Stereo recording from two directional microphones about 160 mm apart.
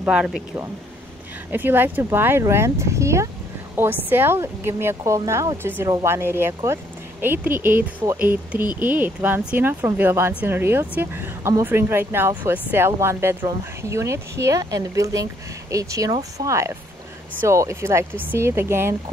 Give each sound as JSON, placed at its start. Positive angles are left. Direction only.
{"t": 0.0, "sound": "speech", "side_deg": -5}